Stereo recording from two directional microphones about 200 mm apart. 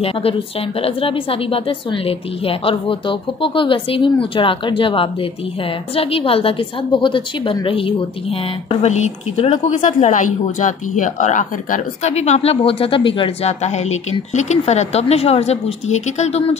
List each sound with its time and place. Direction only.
0.0 s a woman's voice: 30° left (ahead or behind)